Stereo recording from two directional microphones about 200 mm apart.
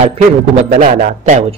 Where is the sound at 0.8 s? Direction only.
40° right (ahead or behind).